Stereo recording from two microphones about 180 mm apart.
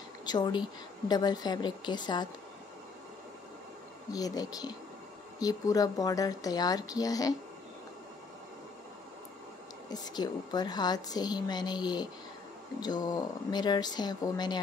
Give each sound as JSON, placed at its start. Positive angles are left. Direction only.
{"t": 0.2, "sound": "a woman's voice", "side_deg": 25}
{"t": 4.1, "sound": "a woman's voice", "side_deg": 20}
{"t": 9.8, "sound": "a woman's voice", "side_deg": 20}